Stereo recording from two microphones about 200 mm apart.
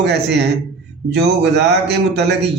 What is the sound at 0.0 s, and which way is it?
Speech, 55° right (ahead or behind).